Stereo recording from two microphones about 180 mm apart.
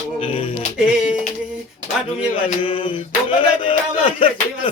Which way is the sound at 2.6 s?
30° left (ahead or behind).